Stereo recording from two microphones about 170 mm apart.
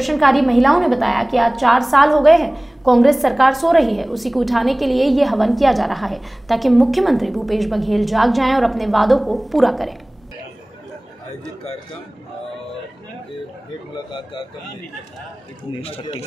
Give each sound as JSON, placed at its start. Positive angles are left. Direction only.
{"t": 0.0, "sound": "a woman's voice", "side_deg": 0}
{"t": 15.8, "sound": "speech", "side_deg": 35}